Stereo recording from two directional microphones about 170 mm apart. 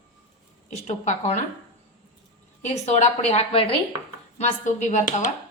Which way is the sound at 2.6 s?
40° left (ahead or behind).